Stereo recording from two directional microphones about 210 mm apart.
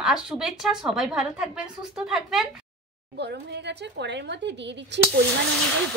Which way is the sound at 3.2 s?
55° right (ahead or behind).